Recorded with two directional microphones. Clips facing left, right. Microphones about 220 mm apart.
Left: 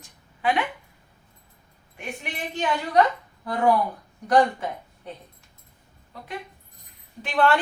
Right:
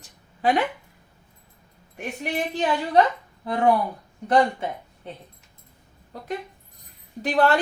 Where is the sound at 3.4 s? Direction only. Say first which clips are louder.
Right 1 dB; 25° right (ahead or behind).